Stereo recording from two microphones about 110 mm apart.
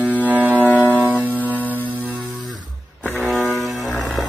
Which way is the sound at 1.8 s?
15° right (ahead or behind).